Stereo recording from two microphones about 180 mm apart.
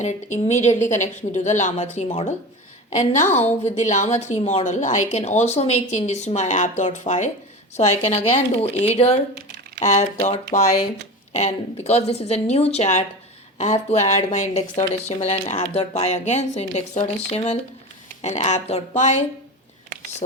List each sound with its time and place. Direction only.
0.0 s a woman's voice: 40° left (ahead or behind)